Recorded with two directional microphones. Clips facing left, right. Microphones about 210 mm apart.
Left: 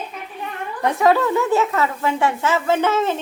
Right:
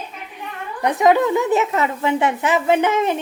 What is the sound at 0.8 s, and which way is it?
Speech, 20° right (ahead or behind).